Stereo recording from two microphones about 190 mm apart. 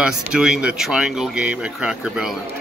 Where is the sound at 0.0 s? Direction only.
5° right (ahead or behind).